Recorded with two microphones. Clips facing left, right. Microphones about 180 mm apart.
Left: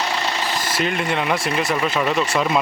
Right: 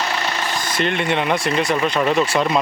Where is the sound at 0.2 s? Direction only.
5° left (ahead or behind).